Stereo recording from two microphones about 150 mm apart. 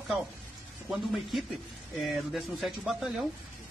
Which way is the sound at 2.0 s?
Centre (ahead or behind).